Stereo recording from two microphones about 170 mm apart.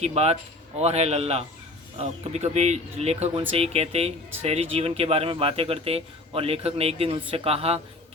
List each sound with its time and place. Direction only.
0.0 s speech: 35° right (ahead or behind)